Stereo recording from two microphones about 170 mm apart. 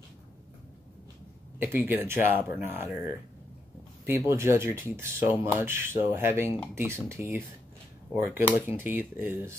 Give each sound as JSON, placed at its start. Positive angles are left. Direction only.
{"t": 1.6, "sound": "speech", "side_deg": -10}
{"t": 4.3, "sound": "speech", "side_deg": -15}